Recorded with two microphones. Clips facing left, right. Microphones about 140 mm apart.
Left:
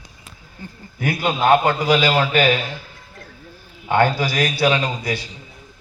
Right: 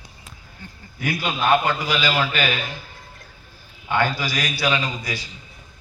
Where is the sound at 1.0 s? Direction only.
55° left (ahead or behind).